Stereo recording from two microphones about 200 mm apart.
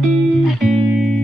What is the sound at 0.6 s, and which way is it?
Music, centre (ahead or behind).